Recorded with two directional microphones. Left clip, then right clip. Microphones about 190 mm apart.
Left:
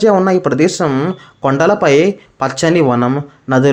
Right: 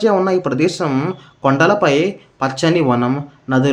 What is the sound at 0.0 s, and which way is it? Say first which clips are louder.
Speech: left 4 dB; 25° left (ahead or behind).